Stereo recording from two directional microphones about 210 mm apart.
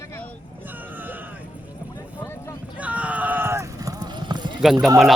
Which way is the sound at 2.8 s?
5° right (ahead or behind).